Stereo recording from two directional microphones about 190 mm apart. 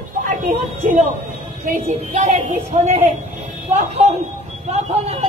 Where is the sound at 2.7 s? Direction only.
35° right (ahead or behind).